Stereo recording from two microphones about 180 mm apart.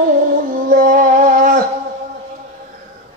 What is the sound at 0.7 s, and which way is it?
Music, 50° right (ahead or behind).